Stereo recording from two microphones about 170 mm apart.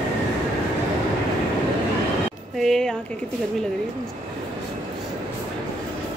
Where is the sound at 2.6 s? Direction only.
Centre (ahead or behind).